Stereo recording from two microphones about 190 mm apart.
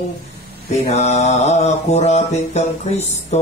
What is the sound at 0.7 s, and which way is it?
Mantra, 35° left (ahead or behind).